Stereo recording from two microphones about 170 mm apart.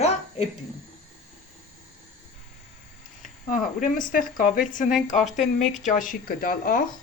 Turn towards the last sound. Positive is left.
turn(degrees=55)  # may be behind; listen again after turning